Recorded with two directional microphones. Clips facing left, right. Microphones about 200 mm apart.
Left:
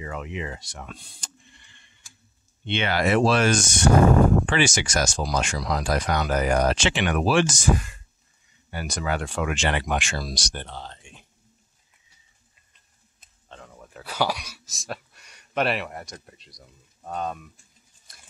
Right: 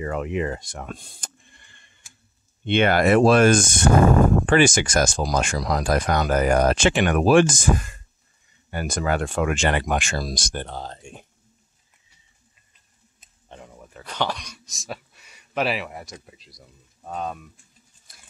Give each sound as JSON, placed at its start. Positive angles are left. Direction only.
{"t": 0.0, "sound": "speech", "side_deg": -50}
{"t": 13.5, "sound": "a sound", "side_deg": -15}
{"t": 13.9, "sound": "speech", "side_deg": 5}